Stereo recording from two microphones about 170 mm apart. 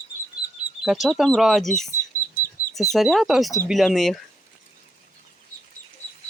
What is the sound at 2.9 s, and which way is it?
Speech, centre (ahead or behind).